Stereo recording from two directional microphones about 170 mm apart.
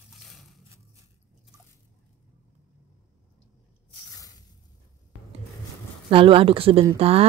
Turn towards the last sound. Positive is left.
turn(degrees=-35)  # may be behind; listen again after turning